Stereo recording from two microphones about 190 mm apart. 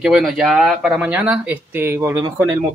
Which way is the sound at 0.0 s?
Centre (ahead or behind).